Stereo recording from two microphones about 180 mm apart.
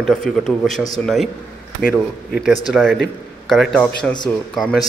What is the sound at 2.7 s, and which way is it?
A man's voice, 5° left (ahead or behind).